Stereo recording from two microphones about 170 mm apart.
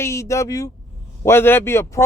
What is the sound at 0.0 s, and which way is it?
Speech, 15° left (ahead or behind).